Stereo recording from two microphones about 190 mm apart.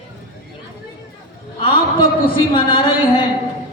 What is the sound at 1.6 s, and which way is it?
A man's voice, 25° left (ahead or behind).